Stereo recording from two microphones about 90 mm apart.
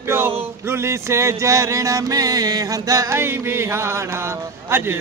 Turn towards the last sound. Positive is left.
turn(degrees=-25)  # may be behind; listen again after turning